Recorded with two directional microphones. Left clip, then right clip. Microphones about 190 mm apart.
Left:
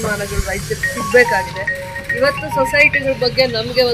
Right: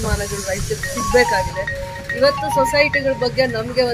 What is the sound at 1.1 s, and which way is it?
Speech, centre (ahead or behind).